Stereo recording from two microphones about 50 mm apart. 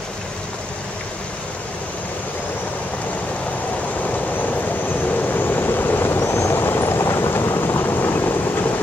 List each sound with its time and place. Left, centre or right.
5.0 s vehicle: left
6.2 s vehicle: left
6.5 s vehicle: left